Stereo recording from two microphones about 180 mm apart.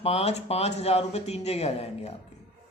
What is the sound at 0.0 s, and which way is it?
Speech, 35° left (ahead or behind).